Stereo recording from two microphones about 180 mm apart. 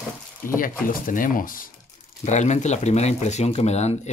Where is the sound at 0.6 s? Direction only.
50° left (ahead or behind).